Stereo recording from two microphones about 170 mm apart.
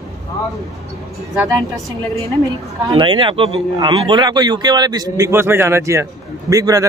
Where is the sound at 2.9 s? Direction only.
30° right (ahead or behind).